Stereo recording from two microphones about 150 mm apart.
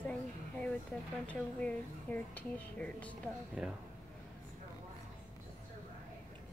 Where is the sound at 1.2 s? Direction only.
10° left (ahead or behind).